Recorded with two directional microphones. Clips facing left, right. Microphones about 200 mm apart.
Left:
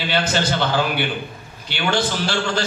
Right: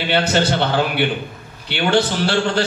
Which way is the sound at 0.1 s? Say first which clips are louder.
Right 4 dB; 60° right (ahead or behind).